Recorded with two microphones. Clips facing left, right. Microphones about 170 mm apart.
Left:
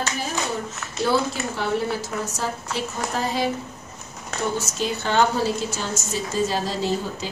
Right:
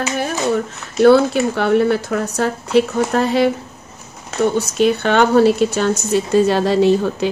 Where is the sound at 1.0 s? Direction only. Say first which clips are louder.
Right 12 dB; 65° right (ahead or behind).